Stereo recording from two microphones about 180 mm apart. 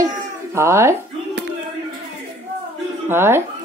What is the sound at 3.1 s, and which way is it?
Speech, 15° right (ahead or behind).